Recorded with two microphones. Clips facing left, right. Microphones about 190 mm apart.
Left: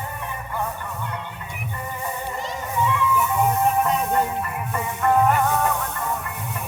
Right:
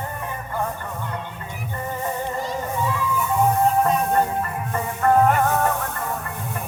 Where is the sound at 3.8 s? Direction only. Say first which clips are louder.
Right 2 dB; 40° right (ahead or behind).